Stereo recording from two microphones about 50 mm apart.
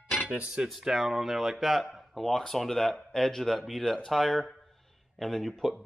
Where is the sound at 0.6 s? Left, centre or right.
Centre.